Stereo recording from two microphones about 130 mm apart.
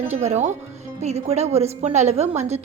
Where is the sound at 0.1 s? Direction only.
55° right (ahead or behind).